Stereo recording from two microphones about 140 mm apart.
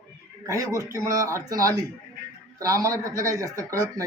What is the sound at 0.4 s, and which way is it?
A man's voice, 25° right (ahead or behind).